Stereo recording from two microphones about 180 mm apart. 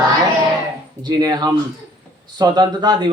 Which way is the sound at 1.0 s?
20° right (ahead or behind).